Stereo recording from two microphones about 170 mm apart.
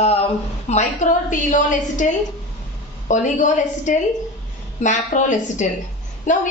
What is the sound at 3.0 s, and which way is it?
A woman's voice, 45° left (ahead or behind).